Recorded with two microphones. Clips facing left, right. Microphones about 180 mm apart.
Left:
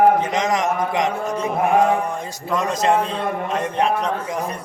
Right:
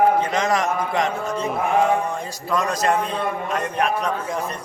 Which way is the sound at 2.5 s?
20° left (ahead or behind).